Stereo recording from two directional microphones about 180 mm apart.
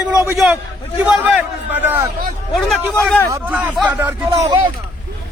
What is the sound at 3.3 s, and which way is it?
Speech, 10° right (ahead or behind).